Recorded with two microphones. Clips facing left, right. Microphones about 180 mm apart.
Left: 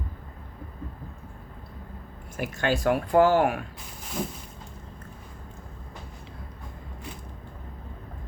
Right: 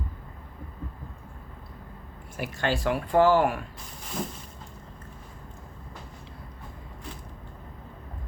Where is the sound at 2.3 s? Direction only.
45° left (ahead or behind).